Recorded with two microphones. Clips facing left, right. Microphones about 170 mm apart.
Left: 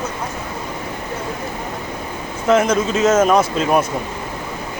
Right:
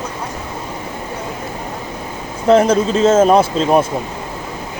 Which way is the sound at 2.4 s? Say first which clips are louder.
Right 4 dB; 35° right (ahead or behind).